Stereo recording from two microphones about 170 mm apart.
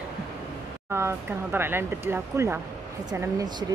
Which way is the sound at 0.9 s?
15° right (ahead or behind).